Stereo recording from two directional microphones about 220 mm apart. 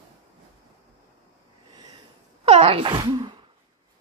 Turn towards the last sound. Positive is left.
turn(degrees=-20)  # may be behind; listen again after turning